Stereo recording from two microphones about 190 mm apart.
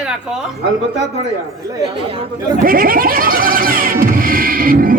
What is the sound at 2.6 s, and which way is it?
Music, 50° right (ahead or behind).